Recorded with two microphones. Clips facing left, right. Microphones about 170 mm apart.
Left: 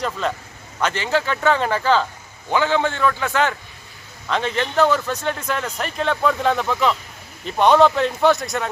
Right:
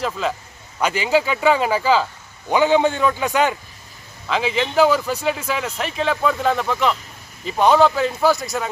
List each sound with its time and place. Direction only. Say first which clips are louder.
0.0 s speech: right 1 dB; centre (ahead or behind)
4.3 s speech: right 1 dB; 5° right (ahead or behind)